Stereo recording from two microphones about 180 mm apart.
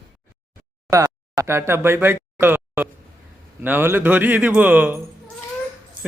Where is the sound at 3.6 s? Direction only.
10° right (ahead or behind).